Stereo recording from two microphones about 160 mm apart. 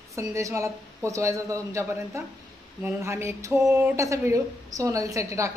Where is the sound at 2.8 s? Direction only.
15° right (ahead or behind).